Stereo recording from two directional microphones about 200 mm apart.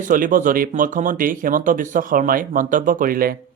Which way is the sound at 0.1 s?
40° right (ahead or behind).